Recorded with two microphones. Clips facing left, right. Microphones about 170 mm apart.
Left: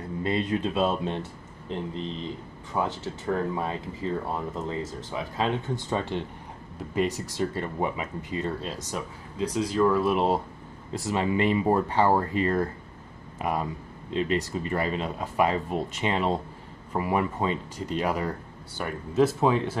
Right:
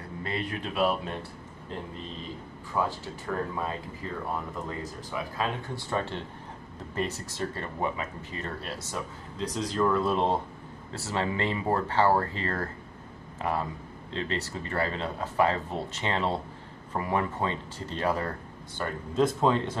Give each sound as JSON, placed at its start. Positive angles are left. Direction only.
{"t": 0.2, "sound": "speech", "side_deg": 20}